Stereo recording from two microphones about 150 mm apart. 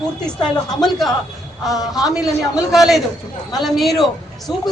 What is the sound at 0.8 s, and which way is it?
Speech, centre (ahead or behind).